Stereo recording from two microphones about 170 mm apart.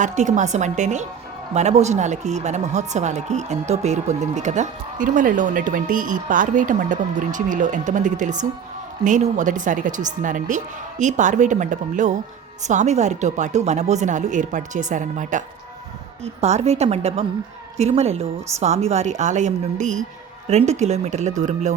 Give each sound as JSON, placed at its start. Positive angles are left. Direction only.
{"t": 0.0, "sound": "a woman's voice", "side_deg": -45}